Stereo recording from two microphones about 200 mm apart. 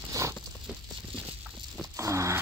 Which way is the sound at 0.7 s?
5° right (ahead or behind).